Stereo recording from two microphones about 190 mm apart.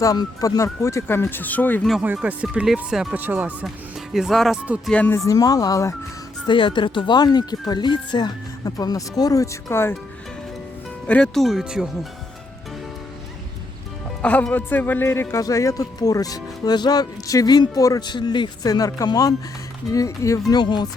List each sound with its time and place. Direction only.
0.0 s speech: 20° left (ahead or behind)
1.9 s speech: 5° right (ahead or behind)
4.9 s speech: 10° left (ahead or behind)
11.0 s speech: 5° left (ahead or behind)
14.2 s speech: 5° left (ahead or behind); by 20.8 s 25° left (ahead or behind)